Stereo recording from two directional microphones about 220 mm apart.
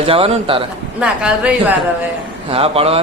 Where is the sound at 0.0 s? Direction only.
25° right (ahead or behind).